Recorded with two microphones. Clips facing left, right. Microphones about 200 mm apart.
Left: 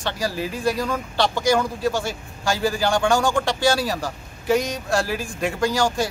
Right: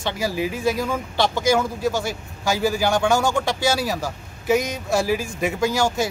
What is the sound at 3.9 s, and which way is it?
Speech, 5° right (ahead or behind).